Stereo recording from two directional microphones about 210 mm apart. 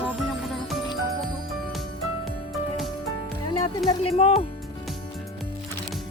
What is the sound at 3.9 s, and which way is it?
Speech, 25° left (ahead or behind).